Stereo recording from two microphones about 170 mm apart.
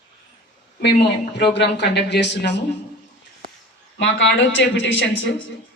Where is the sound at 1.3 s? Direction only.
85° left.